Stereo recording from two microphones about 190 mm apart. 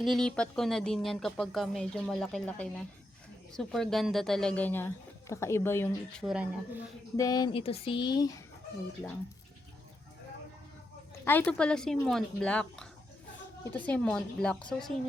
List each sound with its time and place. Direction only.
0.0 s speech: centre (ahead or behind)
6.2 s speech: 5° right (ahead or behind)
7.2 s speech: 20° left (ahead or behind)
11.3 s speech: 10° left (ahead or behind)